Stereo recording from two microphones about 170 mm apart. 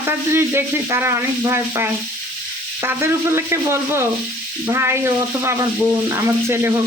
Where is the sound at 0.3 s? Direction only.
15° right (ahead or behind).